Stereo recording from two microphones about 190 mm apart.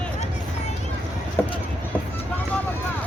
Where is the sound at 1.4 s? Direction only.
10° left (ahead or behind).